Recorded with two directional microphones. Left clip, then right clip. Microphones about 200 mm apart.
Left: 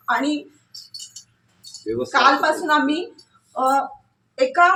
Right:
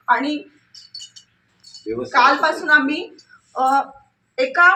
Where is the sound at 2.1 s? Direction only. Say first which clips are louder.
Right 1 dB; centre (ahead or behind).